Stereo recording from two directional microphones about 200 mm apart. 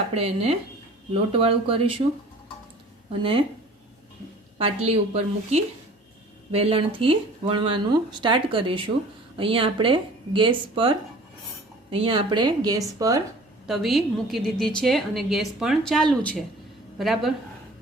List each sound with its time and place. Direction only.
0.1 s a woman's voice: 30° right (ahead or behind)
4.5 s a woman's voice: 30° right (ahead or behind)
13.7 s a woman's voice: centre (ahead or behind)